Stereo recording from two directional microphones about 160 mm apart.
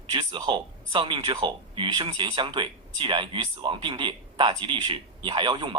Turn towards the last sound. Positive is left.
turn(degrees=-30)  # may be behind; listen again after turning